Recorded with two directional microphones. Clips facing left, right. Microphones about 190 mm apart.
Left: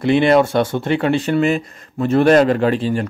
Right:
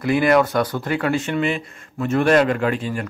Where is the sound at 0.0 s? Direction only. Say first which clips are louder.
Left 3 dB; 25° left (ahead or behind).